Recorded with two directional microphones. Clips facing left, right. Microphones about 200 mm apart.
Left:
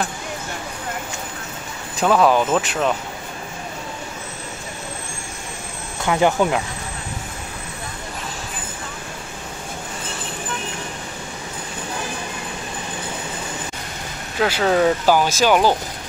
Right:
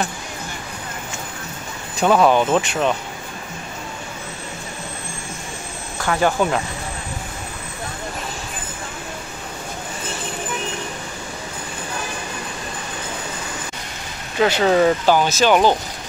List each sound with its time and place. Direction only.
2.0 s speech: centre (ahead or behind)
6.0 s speech: 15° left (ahead or behind)
14.4 s speech: centre (ahead or behind)